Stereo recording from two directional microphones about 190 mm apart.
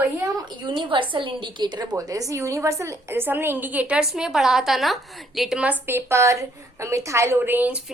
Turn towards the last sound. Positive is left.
turn(degrees=-5)  # may be behind; listen again after turning